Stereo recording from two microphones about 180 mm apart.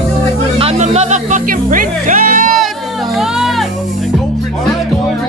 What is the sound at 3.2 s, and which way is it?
Music, centre (ahead or behind).